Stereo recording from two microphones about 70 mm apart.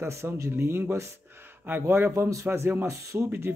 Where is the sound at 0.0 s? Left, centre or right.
Right.